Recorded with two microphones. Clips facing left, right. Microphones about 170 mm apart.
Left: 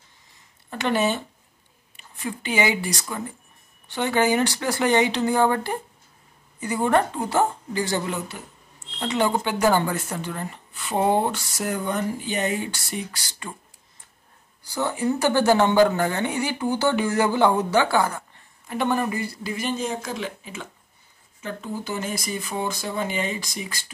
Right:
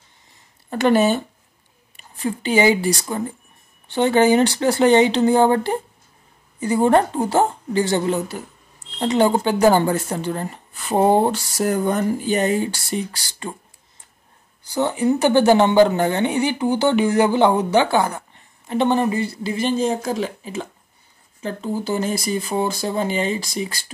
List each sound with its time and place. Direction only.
0.7 s speech: 40° right (ahead or behind)
14.6 s speech: 20° right (ahead or behind)